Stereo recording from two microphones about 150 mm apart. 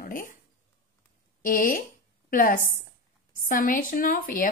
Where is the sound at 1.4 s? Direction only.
65° left (ahead or behind).